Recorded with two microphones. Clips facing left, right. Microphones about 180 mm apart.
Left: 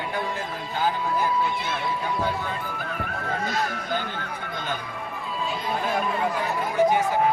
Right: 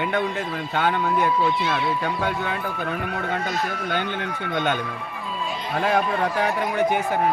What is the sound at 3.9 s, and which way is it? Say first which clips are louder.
Speech: right 3 dB; 75° right (ahead or behind).